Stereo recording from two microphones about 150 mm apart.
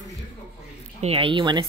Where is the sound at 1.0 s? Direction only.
40° right (ahead or behind).